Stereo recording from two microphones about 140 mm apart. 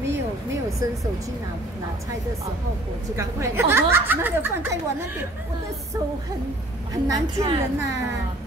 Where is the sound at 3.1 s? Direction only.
20° right (ahead or behind).